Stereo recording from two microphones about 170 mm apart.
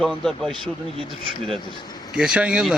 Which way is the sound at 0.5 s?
30° right (ahead or behind).